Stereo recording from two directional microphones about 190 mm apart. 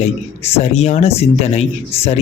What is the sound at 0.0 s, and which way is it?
A man's voice, 35° left (ahead or behind).